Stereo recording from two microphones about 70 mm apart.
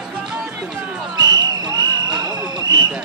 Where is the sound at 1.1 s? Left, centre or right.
Right.